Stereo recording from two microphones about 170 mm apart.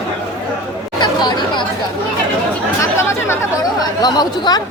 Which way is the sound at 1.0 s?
25° left (ahead or behind).